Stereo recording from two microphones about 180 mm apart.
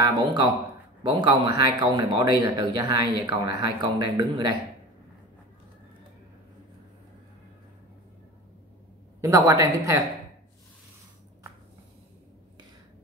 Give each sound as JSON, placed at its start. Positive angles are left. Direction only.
{"t": 0.0, "sound": "speech", "side_deg": -25}
{"t": 9.2, "sound": "a woman's voice", "side_deg": -15}